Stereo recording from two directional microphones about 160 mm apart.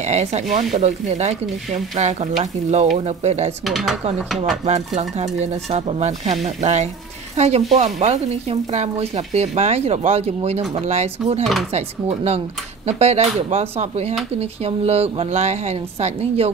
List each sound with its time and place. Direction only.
0.0 s speech: 45° right (ahead or behind)
3.6 s speech: centre (ahead or behind)
4.6 s a woman's voice: 45° right (ahead or behind)